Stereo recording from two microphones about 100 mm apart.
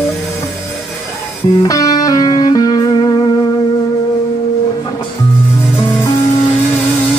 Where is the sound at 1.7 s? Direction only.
35° left (ahead or behind).